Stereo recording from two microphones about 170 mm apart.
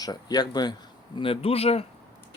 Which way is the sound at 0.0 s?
25° left (ahead or behind).